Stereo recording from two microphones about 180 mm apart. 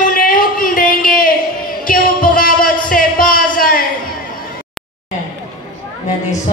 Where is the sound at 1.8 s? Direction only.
50° left (ahead or behind).